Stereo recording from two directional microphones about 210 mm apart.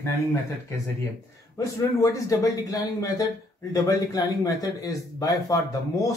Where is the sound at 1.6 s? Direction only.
15° left (ahead or behind).